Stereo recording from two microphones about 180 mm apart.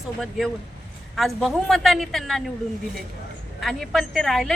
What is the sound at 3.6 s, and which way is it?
Speech, centre (ahead or behind).